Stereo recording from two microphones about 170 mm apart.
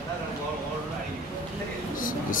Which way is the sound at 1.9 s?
55° left (ahead or behind).